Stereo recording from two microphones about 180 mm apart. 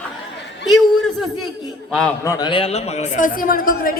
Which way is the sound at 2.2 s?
20° left (ahead or behind).